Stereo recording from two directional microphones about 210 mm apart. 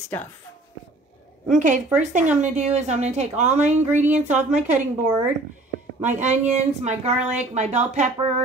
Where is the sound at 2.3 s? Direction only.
35° right (ahead or behind).